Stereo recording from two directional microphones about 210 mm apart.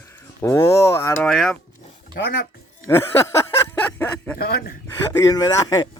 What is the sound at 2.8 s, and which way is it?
Speech, 10° left (ahead or behind).